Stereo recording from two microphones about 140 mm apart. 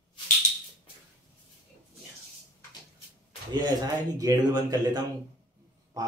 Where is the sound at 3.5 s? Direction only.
30° right (ahead or behind).